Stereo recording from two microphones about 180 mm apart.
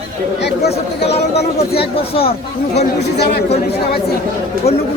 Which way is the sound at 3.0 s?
65° left (ahead or behind).